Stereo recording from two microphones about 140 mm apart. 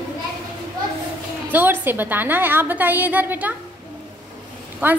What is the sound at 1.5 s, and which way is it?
A woman's voice, 15° right (ahead or behind).